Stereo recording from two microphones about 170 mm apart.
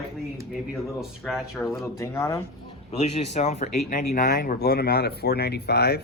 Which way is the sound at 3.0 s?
40° left (ahead or behind).